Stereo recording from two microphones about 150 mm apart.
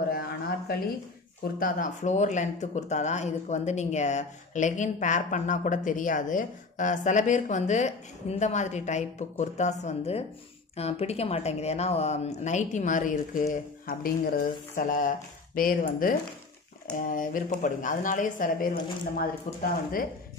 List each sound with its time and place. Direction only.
1.4 s speech: 65° left (ahead or behind)